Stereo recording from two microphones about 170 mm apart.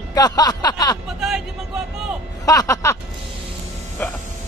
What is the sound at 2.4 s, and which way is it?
Speech, 20° left (ahead or behind).